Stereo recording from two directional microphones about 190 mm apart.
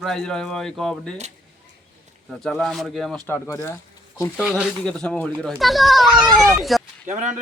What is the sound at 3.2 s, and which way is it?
Speech, 15° left (ahead or behind).